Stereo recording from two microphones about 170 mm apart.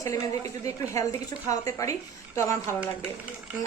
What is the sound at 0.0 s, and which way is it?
A woman's voice, 20° left (ahead or behind).